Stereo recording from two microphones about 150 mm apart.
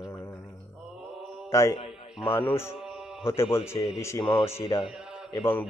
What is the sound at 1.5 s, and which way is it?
A man's voice, 20° left (ahead or behind).